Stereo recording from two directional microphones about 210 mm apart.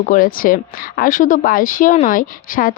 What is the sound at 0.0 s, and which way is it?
A woman's voice, 40° left (ahead or behind).